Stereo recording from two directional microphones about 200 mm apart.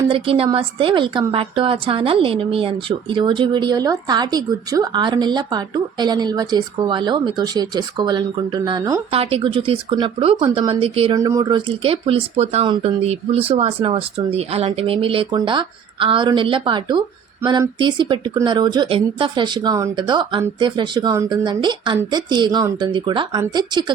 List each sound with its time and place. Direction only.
0.1 s a woman's voice: 25° right (ahead or behind)
11.1 s a woman's voice: 15° right (ahead or behind)